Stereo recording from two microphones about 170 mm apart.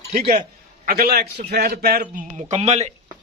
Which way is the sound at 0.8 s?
60° right (ahead or behind).